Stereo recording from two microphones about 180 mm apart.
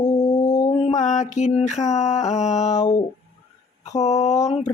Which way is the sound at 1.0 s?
40° left (ahead or behind).